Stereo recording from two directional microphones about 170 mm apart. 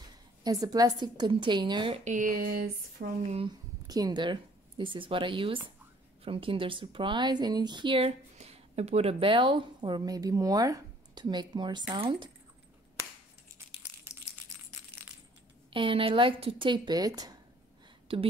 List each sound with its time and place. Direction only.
0.4 s speech: 25° right (ahead or behind)
2.1 s a sound: 55° right (ahead or behind)
3.3 s speech: 35° right (ahead or behind)
3.8 s speech: 20° right (ahead or behind)
15.7 s speech: 30° right (ahead or behind)
18.1 s speech: 35° right (ahead or behind)